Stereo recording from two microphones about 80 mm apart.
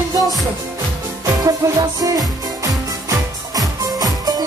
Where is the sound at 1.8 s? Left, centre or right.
Right.